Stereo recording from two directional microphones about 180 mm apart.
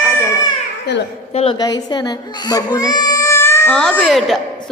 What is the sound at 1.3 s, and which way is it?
Speech, 35° left (ahead or behind).